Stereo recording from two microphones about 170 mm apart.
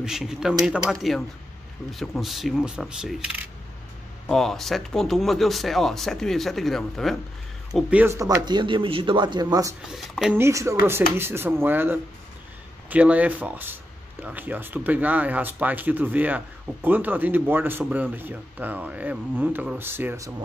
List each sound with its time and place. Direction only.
0.0 s speech: 5° right (ahead or behind)
4.3 s speech: centre (ahead or behind)
7.7 s speech: 10° right (ahead or behind)
9.8 s speech: centre (ahead or behind)
10.3 s speech: 15° right (ahead or behind)